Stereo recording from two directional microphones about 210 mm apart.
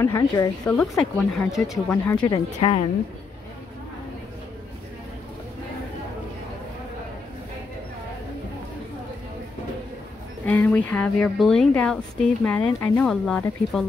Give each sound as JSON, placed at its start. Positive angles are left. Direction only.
{"t": 0.0, "sound": "a woman's voice", "side_deg": 10}
{"t": 2.0, "sound": "speech", "side_deg": 15}
{"t": 10.4, "sound": "speech", "side_deg": 5}